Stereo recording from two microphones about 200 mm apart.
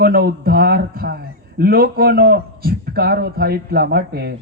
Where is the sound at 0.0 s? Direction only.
50° right (ahead or behind).